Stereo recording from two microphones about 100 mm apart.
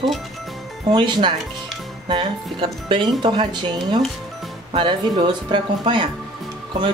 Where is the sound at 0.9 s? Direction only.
50° right (ahead or behind).